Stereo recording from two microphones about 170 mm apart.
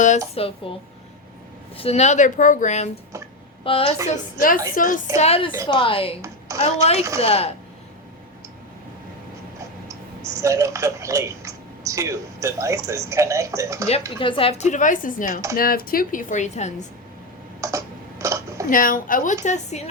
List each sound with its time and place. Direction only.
0.3 s a woman's voice: 35° left (ahead or behind)
1.7 s a woman's voice: 35° left (ahead or behind)
3.6 s a woman's voice: 30° left (ahead or behind)
4.0 s a woman's voice: 55° left (ahead or behind)
5.1 s a woman's voice: 40° left (ahead or behind)
10.4 s speech: 20° right (ahead or behind)
14.2 s a woman's voice: 30° left (ahead or behind)
17.6 s a sound: 20° right (ahead or behind)
18.7 s a woman's voice: 55° left (ahead or behind)
19.5 s a woman's voice: 40° left (ahead or behind)